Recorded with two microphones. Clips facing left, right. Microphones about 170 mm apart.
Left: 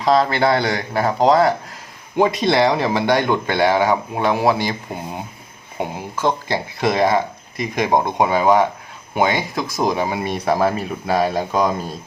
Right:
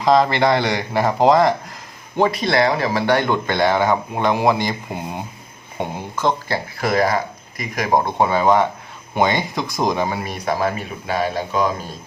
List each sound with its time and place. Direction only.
0.0 s speech: centre (ahead or behind)
2.1 s speech: 15° left (ahead or behind)
6.8 s speech: 25° left (ahead or behind); by 10.2 s 5° left (ahead or behind)
10.2 s speech: 30° left (ahead or behind)